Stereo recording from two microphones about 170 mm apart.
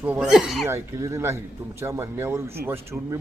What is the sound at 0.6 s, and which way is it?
Speech, 15° right (ahead or behind).